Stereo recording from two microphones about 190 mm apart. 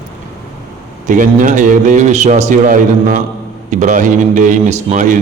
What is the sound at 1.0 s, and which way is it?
A man's voice, 45° right (ahead or behind).